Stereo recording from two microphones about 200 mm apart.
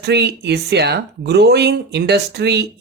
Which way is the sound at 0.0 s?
55° right (ahead or behind).